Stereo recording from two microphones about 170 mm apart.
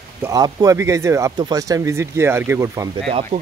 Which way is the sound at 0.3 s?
20° right (ahead or behind).